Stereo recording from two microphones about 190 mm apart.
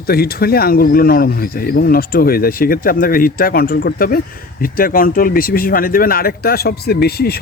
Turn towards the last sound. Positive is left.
turn(degrees=55)  # may be behind; listen again after turning